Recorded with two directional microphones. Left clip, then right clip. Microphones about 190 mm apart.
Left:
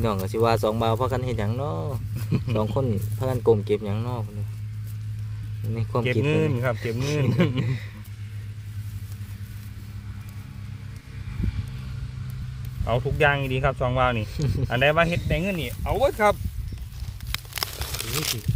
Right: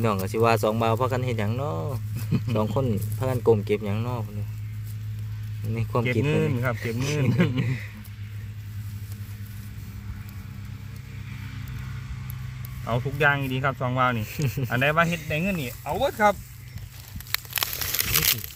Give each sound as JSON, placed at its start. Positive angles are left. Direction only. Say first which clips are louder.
{"t": 0.0, "sound": "speech", "louder": "even", "side_deg": 5}
{"t": 2.1, "sound": "speech", "louder": "left 1 dB", "side_deg": 35}
{"t": 2.8, "sound": "speech", "louder": "even", "side_deg": 5}
{"t": 5.7, "sound": "speech", "louder": "even", "side_deg": 5}
{"t": 6.2, "sound": "speech", "louder": "left 2 dB", "side_deg": 35}
{"t": 7.6, "sound": "speech", "louder": "right 1 dB", "side_deg": 5}
{"t": 12.8, "sound": "speech", "louder": "left 1 dB", "side_deg": 20}
{"t": 14.3, "sound": "speech", "louder": "even", "side_deg": 0}
{"t": 14.7, "sound": "speech", "louder": "left 2 dB", "side_deg": 30}
{"t": 17.3, "sound": "tearing", "louder": "right 2 dB", "side_deg": -10}
{"t": 17.9, "sound": "crumpling", "louder": "right 5 dB", "side_deg": 5}